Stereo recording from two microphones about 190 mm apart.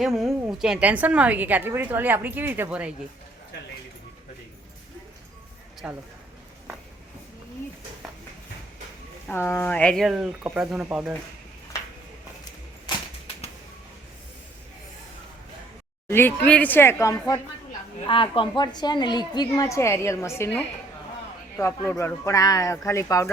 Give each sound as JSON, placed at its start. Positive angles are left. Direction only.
{"t": 0.4, "sound": "a woman's voice", "side_deg": -5}
{"t": 5.8, "sound": "speech", "side_deg": -5}
{"t": 9.3, "sound": "speech", "side_deg": 10}
{"t": 16.0, "sound": "a woman's voice", "side_deg": 10}